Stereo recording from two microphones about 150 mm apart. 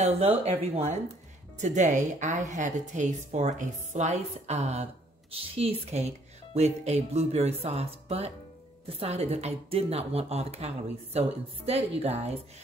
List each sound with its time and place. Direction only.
0.0 s a woman's voice: 45° right (ahead or behind)